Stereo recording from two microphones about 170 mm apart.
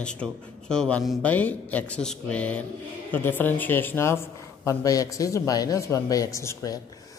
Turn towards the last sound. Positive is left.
turn(degrees=20)  # may be behind; listen again after turning